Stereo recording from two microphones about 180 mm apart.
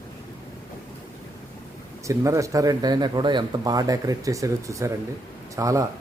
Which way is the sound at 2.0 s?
15° right (ahead or behind).